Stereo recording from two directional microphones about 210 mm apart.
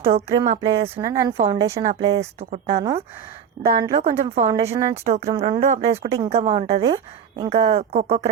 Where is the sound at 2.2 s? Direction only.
30° right (ahead or behind).